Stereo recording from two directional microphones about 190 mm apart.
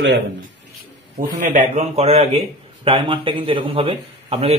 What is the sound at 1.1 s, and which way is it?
A man's voice, 40° right (ahead or behind).